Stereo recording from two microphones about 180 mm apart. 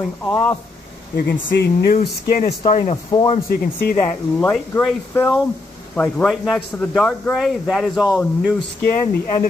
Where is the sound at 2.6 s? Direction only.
35° left (ahead or behind).